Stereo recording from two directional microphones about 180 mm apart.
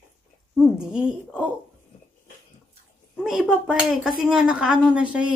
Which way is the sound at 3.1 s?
5° right (ahead or behind).